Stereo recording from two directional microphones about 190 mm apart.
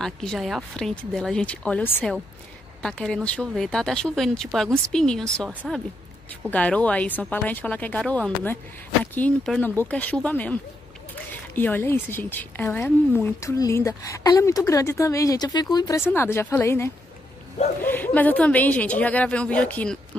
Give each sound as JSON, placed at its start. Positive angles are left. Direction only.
{"t": 0.0, "sound": "a woman's voice", "side_deg": 0}